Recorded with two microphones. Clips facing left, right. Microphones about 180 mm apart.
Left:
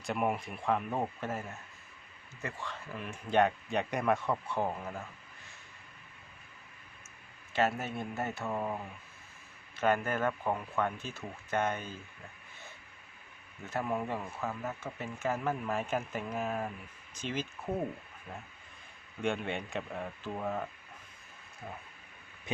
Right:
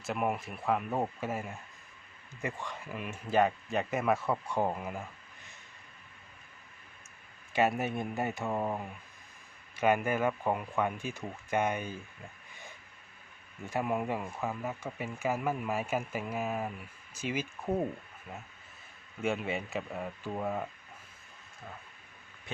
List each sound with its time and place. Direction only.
0.0 s speech: centre (ahead or behind)
7.5 s speech: 15° right (ahead or behind)
13.7 s speech: 15° right (ahead or behind)
19.2 s speech: 5° right (ahead or behind)